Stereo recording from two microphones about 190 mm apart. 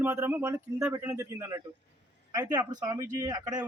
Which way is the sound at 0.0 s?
10° right (ahead or behind).